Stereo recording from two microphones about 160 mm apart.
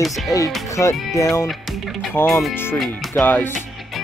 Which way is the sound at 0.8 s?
20° left (ahead or behind).